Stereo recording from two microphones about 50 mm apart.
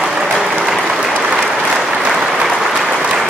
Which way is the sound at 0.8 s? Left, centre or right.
Centre.